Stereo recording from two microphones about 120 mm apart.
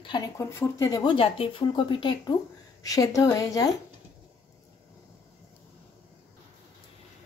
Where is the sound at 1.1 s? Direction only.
50° left (ahead or behind).